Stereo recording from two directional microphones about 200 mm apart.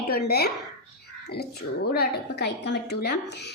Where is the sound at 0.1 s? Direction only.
50° left (ahead or behind).